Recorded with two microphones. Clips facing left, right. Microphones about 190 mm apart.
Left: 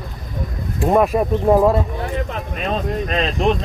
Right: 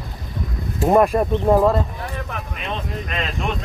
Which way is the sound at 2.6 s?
35° left (ahead or behind).